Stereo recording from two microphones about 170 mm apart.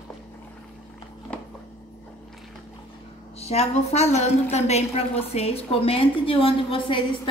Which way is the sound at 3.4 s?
35° left (ahead or behind).